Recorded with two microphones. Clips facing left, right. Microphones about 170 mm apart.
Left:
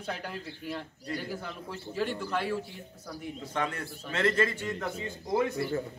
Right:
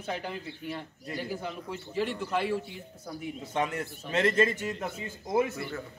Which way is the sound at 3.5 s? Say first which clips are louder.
Right 3 dB; 20° right (ahead or behind).